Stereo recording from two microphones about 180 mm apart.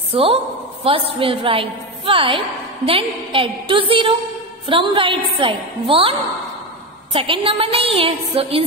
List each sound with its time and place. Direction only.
0.1 s a woman's voice: 30° right (ahead or behind)